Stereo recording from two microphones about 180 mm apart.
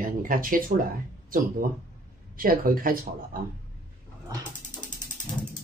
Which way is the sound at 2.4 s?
50° right (ahead or behind).